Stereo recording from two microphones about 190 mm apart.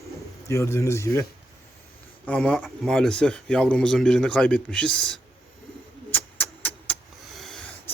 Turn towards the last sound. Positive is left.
turn(degrees=5)  # may be behind; listen again after turning